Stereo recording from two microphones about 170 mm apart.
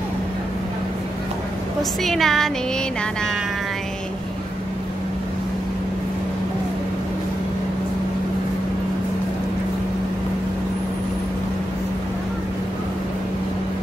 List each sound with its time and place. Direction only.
1.8 s a woman's voice: centre (ahead or behind)